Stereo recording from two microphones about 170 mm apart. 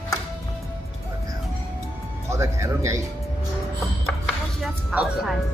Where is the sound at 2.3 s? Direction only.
20° right (ahead or behind).